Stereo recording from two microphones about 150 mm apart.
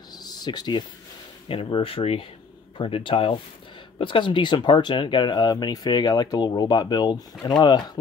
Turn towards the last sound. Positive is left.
turn(degrees=30)  # may be behind; listen again after turning